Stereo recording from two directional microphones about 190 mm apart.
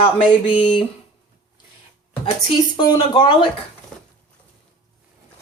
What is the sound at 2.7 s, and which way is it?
Speech, 25° left (ahead or behind).